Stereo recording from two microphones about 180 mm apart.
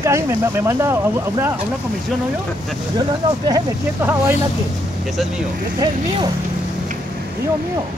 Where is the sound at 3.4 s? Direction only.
20° right (ahead or behind).